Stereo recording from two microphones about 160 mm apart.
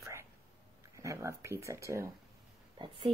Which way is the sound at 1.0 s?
20° right (ahead or behind).